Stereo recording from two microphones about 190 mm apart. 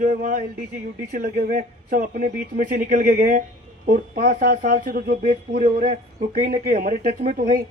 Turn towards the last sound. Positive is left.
turn(degrees=-45)  # may be behind; listen again after turning